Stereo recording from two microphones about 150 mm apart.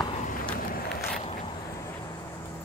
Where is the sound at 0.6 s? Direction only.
80° left.